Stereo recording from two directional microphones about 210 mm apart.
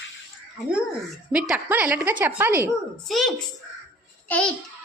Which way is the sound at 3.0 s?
Centre (ahead or behind).